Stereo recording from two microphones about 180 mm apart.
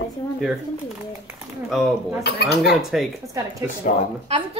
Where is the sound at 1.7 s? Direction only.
Centre (ahead or behind).